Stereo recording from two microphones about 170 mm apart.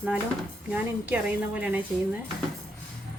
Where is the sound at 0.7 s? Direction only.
10° right (ahead or behind).